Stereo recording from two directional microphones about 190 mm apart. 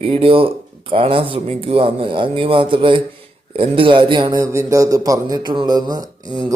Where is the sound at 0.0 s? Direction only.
30° right (ahead or behind).